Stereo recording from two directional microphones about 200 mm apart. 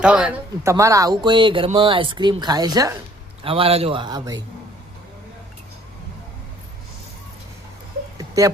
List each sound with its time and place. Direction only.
0.0 s speech: 5° right (ahead or behind); by 4.4 s 20° right (ahead or behind)